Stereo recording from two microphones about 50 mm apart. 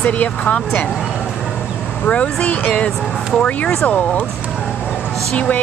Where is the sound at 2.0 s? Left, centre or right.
Left.